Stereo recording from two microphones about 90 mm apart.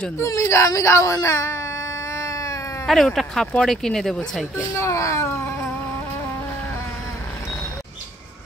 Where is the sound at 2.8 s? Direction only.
Centre (ahead or behind).